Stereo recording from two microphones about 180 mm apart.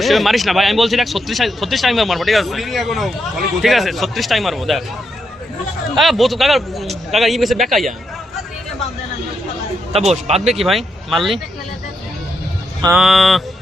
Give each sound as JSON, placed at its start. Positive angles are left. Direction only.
{"t": 0.0, "sound": "speech", "side_deg": 0}
{"t": 6.0, "sound": "speech", "side_deg": 0}
{"t": 10.1, "sound": "speech", "side_deg": -35}
{"t": 10.4, "sound": "speech", "side_deg": 0}
{"t": 12.9, "sound": "speech", "side_deg": 0}